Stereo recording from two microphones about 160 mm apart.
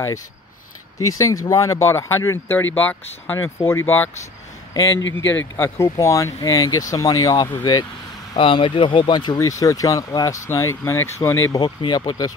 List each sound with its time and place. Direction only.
0.9 s speech: 20° left (ahead or behind)
5.4 s speech: 15° left (ahead or behind)